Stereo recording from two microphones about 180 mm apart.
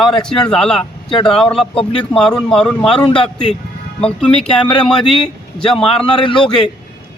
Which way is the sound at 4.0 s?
5° left (ahead or behind).